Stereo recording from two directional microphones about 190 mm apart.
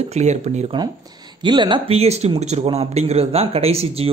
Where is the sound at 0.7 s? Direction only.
20° right (ahead or behind).